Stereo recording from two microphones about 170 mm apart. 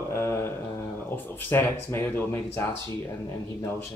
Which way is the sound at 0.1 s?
15° left (ahead or behind).